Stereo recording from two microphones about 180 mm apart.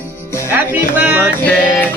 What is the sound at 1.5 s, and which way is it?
Speech, 10° left (ahead or behind).